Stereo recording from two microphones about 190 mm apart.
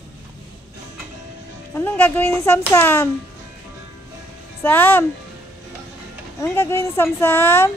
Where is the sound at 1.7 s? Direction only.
10° left (ahead or behind).